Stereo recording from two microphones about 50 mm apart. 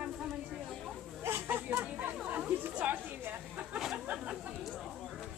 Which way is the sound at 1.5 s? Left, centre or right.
Right.